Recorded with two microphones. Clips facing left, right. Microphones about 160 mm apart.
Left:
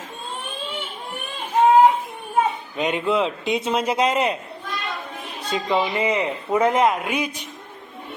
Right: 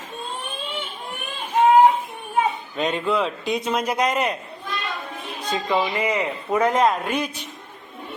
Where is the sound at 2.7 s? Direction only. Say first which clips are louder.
Left 2 dB; 15° left (ahead or behind).